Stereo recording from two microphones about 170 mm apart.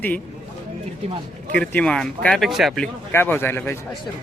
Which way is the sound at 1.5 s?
5° left (ahead or behind).